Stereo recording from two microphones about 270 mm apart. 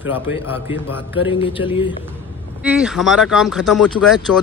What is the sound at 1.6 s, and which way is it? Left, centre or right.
Speech, left.